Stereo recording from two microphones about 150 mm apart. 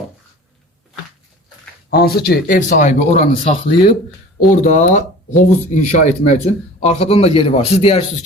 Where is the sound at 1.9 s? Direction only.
90° left; by 3.3 s 55° left (ahead or behind).